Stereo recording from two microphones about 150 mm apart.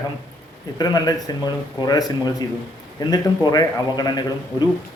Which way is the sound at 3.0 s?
25° left (ahead or behind).